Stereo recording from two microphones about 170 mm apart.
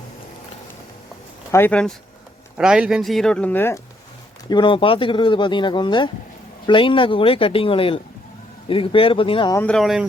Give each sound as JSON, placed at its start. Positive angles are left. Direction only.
{"t": 1.5, "sound": "speech", "side_deg": 15}
{"t": 2.6, "sound": "speech", "side_deg": -5}
{"t": 4.4, "sound": "speech", "side_deg": 25}
{"t": 9.6, "sound": "speech", "side_deg": 5}